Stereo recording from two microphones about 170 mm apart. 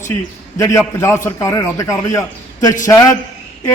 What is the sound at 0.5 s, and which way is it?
A man's voice, 15° left (ahead or behind).